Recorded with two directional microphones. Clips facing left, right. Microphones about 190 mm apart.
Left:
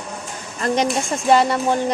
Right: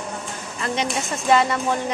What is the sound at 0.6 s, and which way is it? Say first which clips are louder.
Speech: left 6 dB; 40° left (ahead or behind).